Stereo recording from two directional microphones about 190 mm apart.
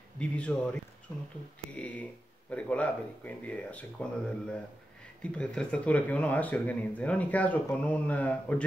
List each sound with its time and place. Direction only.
0.2 s speech: 5° left (ahead or behind)